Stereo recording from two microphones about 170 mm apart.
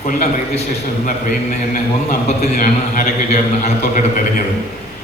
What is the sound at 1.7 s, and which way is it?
Speech, 40° left (ahead or behind).